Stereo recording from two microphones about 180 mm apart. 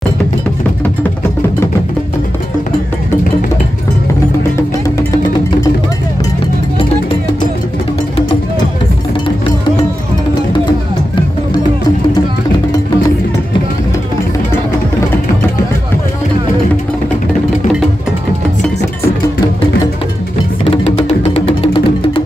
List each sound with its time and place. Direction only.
20.7 s music: 35° left (ahead or behind)